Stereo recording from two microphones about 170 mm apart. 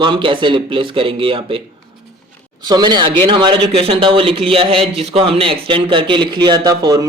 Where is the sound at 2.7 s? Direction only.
25° right (ahead or behind).